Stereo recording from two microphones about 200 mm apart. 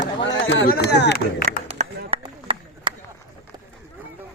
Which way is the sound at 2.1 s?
25° right (ahead or behind).